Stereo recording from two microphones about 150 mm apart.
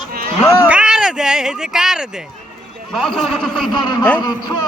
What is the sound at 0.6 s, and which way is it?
Speech, 5° right (ahead or behind).